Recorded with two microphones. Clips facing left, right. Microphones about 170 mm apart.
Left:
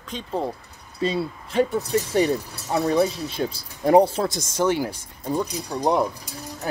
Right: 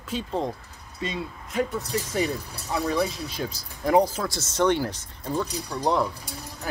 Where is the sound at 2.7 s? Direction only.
30° left (ahead or behind).